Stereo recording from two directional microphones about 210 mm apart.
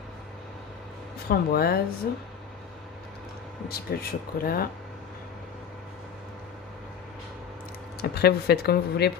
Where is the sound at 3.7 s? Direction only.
45° left (ahead or behind).